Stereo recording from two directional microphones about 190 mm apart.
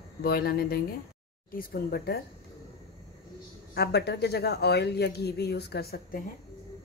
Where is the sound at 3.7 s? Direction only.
60° left (ahead or behind).